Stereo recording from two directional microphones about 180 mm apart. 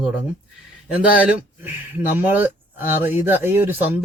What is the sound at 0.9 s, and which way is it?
Speech, 10° right (ahead or behind).